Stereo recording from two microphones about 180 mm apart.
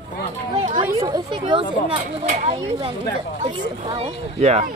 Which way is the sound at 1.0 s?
20° right (ahead or behind).